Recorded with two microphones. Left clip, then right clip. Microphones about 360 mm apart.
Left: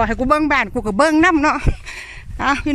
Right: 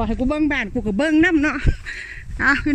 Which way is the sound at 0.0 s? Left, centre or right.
Left.